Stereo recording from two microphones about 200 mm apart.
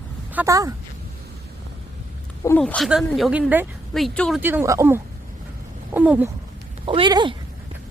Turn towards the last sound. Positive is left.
turn(degrees=-25)  # may be behind; listen again after turning